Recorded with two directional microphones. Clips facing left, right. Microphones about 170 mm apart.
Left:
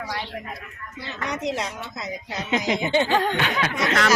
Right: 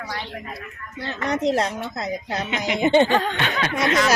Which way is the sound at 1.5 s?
60° right (ahead or behind).